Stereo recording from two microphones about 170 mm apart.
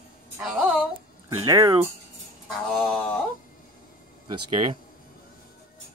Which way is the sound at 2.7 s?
5° left (ahead or behind).